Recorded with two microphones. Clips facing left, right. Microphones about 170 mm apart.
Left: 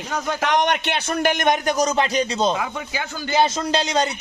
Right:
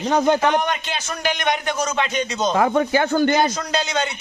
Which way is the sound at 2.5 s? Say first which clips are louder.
Right 10 dB; 50° right (ahead or behind).